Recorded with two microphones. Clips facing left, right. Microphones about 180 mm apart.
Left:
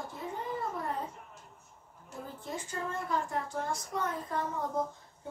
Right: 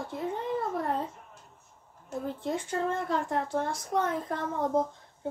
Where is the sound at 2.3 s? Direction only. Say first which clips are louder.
Right 9 dB; 70° right (ahead or behind).